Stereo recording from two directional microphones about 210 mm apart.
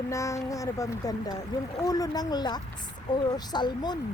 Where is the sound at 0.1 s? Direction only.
15° left (ahead or behind).